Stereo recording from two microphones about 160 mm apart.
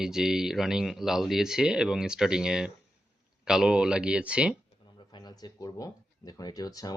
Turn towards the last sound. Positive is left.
turn(degrees=25)  # may be behind; listen again after turning